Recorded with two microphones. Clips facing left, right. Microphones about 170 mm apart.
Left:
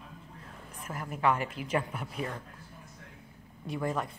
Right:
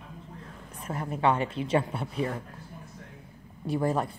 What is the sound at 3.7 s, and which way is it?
Speech, 35° right (ahead or behind).